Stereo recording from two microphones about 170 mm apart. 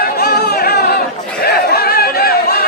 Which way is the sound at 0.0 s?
70° left (ahead or behind).